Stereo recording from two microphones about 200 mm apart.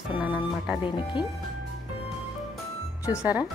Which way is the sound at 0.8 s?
25° left (ahead or behind).